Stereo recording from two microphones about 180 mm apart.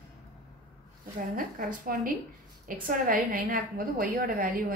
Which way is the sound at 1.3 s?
50° right (ahead or behind).